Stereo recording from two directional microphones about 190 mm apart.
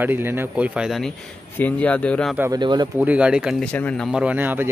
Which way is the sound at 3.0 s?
5° right (ahead or behind).